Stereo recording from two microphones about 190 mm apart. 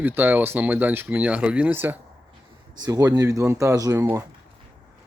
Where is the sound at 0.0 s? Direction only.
10° right (ahead or behind).